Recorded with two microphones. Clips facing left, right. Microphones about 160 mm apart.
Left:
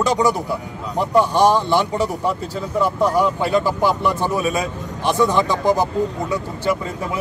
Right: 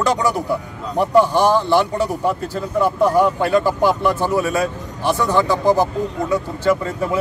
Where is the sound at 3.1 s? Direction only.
10° left (ahead or behind).